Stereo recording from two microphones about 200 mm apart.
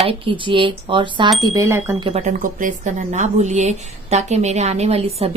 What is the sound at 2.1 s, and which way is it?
Speech, 30° right (ahead or behind).